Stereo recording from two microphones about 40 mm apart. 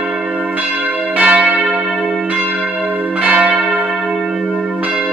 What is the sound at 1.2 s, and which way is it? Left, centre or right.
Church bell, right.